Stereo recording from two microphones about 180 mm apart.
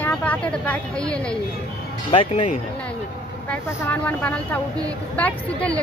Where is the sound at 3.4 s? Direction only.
10° left (ahead or behind).